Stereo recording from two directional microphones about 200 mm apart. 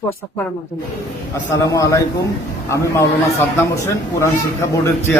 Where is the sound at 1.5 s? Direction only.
15° left (ahead or behind).